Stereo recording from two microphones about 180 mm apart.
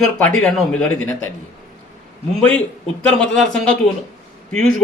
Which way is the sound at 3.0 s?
5° left (ahead or behind).